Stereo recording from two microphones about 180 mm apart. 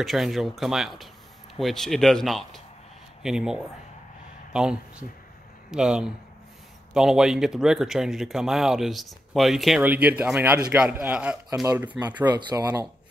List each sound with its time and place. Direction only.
0.0 s speech: centre (ahead or behind)
12.3 s speech: 25° right (ahead or behind)